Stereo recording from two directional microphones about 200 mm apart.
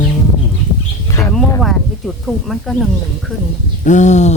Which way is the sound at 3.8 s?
35° left (ahead or behind).